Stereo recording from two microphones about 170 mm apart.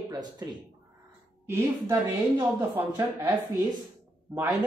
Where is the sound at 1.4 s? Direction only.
15° right (ahead or behind).